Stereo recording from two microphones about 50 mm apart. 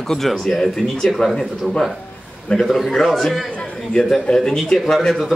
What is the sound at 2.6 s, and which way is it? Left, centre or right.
Speech, centre.